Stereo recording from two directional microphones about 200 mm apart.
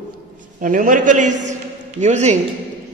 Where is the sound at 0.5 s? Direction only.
40° right (ahead or behind).